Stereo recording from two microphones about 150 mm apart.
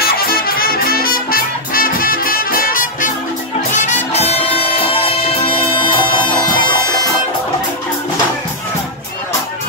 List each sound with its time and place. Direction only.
0.0 s music: 80° left; by 3.1 s 65° left (ahead or behind)
3.7 s music: 50° left (ahead or behind); by 6.8 s 30° left (ahead or behind)